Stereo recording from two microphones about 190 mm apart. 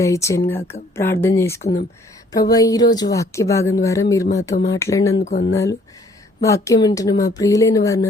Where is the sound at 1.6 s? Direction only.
45° left (ahead or behind).